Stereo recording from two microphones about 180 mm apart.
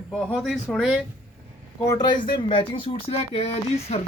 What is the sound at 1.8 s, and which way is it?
Speech, 20° left (ahead or behind).